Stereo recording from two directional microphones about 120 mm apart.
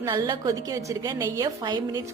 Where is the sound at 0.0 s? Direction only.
35° right (ahead or behind).